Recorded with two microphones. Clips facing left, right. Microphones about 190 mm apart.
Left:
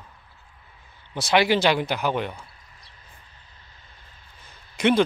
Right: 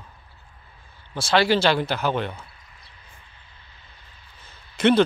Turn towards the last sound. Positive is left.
turn(degrees=10)  # may be behind; listen again after turning